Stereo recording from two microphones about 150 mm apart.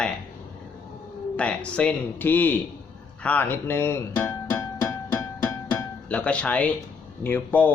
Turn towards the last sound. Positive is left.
turn(degrees=10)  # may be behind; listen again after turning